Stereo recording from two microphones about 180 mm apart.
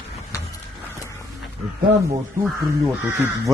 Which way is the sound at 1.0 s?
15° left (ahead or behind).